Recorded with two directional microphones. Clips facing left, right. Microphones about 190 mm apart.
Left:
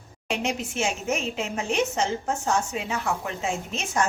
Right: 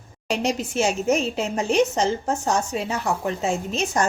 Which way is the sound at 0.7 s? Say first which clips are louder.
Right 6 dB; 40° right (ahead or behind).